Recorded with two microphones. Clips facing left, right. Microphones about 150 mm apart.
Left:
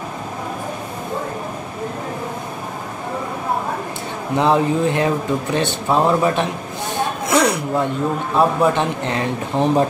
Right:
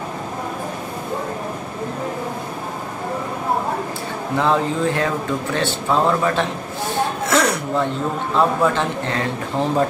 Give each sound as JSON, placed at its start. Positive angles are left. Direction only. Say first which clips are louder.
{"t": 4.4, "sound": "speech", "louder": "left 3 dB", "side_deg": 20}
{"t": 7.2, "sound": "a sound", "louder": "left 3 dB", "side_deg": 10}
{"t": 8.4, "sound": "speech", "louder": "left 2 dB", "side_deg": 15}